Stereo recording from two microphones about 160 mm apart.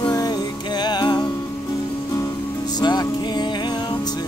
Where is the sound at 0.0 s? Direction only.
25° left (ahead or behind).